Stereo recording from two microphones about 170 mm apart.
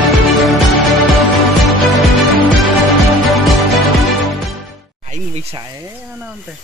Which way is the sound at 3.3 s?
Centre (ahead or behind).